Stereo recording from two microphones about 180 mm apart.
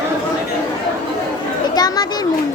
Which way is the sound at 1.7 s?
20° left (ahead or behind).